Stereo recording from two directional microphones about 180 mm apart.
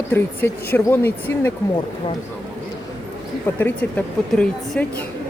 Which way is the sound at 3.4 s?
10° left (ahead or behind).